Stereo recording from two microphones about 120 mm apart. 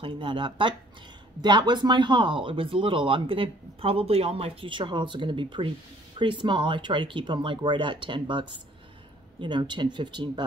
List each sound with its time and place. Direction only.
0.0 s speech: 45° right (ahead or behind)